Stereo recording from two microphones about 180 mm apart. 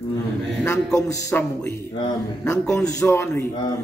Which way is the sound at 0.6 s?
15° left (ahead or behind).